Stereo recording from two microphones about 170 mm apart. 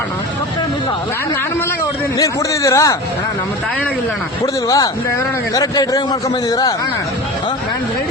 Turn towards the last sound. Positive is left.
turn(degrees=20)  # may be behind; listen again after turning